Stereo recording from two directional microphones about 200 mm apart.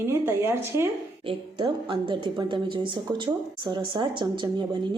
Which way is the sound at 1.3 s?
25° right (ahead or behind).